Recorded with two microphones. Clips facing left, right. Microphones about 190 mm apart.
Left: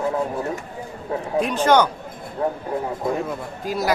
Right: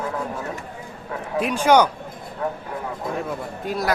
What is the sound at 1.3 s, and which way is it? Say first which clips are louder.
Speech: right 1 dB; 10° right (ahead or behind).